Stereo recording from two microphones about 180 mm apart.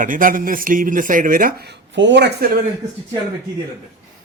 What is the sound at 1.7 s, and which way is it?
Speech, 75° right (ahead or behind).